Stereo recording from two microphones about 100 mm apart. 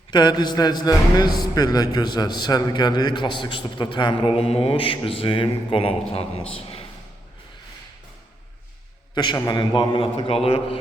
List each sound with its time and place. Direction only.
0.1 s a man's voice: 45° left (ahead or behind); by 6.8 s 75° left (ahead or behind)
9.1 s a man's voice: 45° left (ahead or behind); by 10.8 s 70° left (ahead or behind)